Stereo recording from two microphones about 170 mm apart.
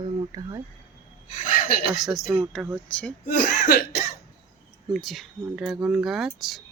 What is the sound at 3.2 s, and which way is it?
Cough, 65° left (ahead or behind).